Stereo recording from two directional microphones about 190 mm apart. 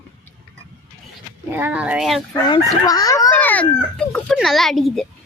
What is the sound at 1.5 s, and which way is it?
Speech, 10° right (ahead or behind).